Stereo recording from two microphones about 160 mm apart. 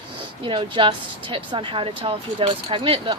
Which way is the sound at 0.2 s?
30° right (ahead or behind).